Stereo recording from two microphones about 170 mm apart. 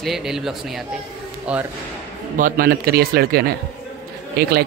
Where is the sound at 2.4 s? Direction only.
60° right (ahead or behind).